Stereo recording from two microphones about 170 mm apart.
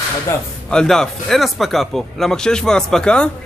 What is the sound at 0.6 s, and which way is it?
Speech, 5° left (ahead or behind).